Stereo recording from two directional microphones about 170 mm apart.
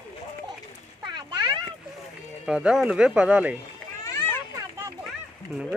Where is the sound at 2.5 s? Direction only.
5° right (ahead or behind).